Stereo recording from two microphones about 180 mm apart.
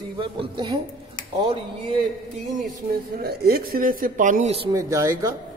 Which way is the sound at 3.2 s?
60° right (ahead or behind).